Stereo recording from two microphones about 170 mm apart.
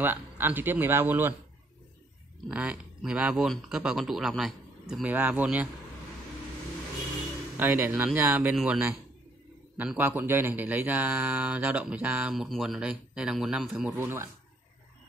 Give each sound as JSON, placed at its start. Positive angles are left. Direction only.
{"t": 0.0, "sound": "speech", "side_deg": -10}
{"t": 2.4, "sound": "speech", "side_deg": -5}
{"t": 7.5, "sound": "speech", "side_deg": -10}